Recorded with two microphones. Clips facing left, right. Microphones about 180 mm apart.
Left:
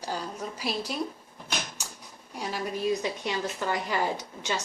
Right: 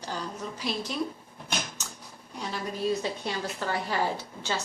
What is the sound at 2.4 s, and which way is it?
A woman's voice, 15° left (ahead or behind).